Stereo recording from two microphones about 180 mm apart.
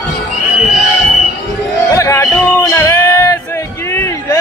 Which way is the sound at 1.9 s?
15° left (ahead or behind).